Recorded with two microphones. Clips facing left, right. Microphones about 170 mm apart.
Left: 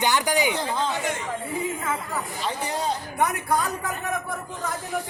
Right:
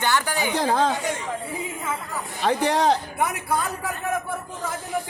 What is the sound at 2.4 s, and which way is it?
Speech, 80° right.